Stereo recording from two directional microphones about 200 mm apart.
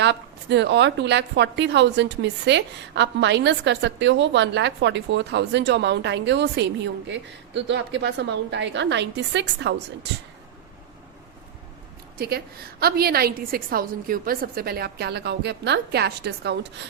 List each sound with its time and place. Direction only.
0.0 s a woman's voice: 60° right (ahead or behind)
12.1 s a woman's voice: 50° right (ahead or behind)